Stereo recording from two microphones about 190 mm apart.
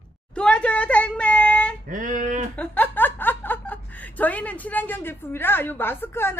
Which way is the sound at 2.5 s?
10° left (ahead or behind).